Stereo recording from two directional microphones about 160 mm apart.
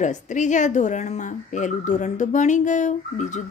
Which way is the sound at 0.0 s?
50° left (ahead or behind).